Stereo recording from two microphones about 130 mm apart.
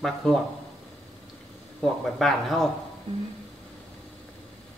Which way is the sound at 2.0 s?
Centre (ahead or behind).